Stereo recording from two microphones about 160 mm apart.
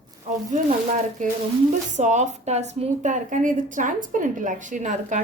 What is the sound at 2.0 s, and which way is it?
A woman's voice, 50° right (ahead or behind).